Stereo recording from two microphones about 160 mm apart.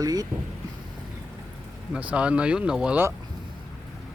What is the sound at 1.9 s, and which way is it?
Speech, 5° right (ahead or behind).